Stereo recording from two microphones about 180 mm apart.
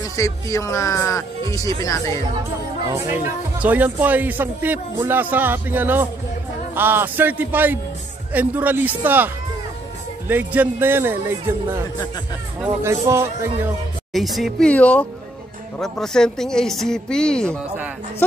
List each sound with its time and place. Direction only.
0.1 s speech: 15° left (ahead or behind)
3.1 s a man's voice: 10° right (ahead or behind)
14.1 s speech: centre (ahead or behind)